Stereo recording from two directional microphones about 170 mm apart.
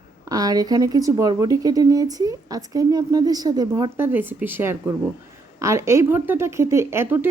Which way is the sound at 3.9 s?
10° right (ahead or behind).